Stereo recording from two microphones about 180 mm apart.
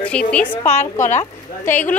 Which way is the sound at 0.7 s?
40° left (ahead or behind).